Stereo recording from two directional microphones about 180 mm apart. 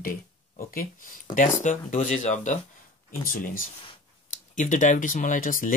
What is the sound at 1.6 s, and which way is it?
Speech, 45° left (ahead or behind).